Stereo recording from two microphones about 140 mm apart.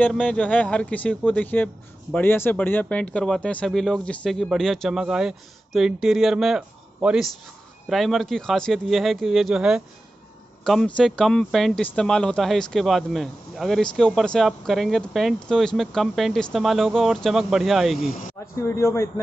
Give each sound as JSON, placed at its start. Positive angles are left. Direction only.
{"t": 0.0, "sound": "speech", "side_deg": 10}
{"t": 18.6, "sound": "speech", "side_deg": 20}